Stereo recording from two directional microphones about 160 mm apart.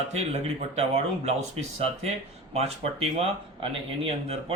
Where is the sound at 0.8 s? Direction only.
40° right (ahead or behind).